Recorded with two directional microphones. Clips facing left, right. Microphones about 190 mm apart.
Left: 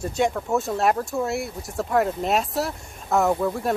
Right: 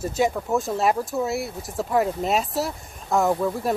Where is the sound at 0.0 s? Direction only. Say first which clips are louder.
Even; 5° right (ahead or behind).